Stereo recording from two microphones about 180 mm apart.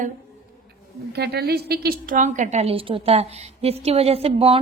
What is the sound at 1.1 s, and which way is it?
A woman's voice, 65° right (ahead or behind).